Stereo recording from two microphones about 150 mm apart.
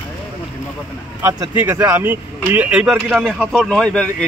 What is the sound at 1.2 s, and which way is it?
Speech, 15° right (ahead or behind).